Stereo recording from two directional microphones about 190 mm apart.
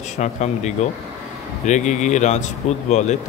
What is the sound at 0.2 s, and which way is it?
Speech, 40° left (ahead or behind).